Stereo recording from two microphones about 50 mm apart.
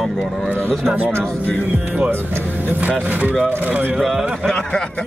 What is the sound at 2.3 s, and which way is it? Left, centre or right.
Speech, right.